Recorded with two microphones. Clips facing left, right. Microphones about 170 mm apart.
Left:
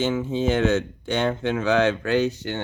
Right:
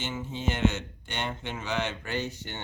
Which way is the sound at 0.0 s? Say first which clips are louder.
Left 12 dB; 90° left.